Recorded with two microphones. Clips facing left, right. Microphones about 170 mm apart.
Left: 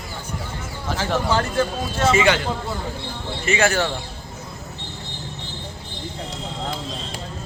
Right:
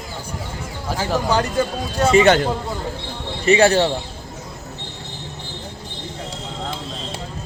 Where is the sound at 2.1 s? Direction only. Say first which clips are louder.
Right 8 dB; 40° right (ahead or behind).